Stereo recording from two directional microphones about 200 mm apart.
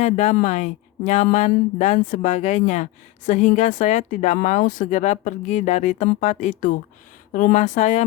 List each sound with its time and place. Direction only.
0.0 s speech: 35° left (ahead or behind)